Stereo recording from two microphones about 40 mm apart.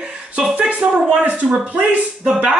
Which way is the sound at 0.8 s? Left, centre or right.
Right.